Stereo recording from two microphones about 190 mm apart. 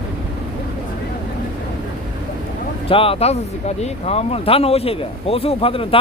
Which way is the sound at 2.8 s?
30° left (ahead or behind).